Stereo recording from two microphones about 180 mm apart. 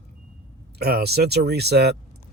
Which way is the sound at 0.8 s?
60° right (ahead or behind).